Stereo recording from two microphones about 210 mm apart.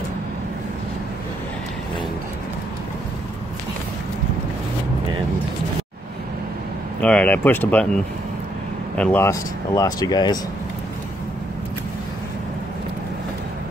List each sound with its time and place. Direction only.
7.0 s speech: 5° left (ahead or behind)
8.9 s speech: 5° left (ahead or behind)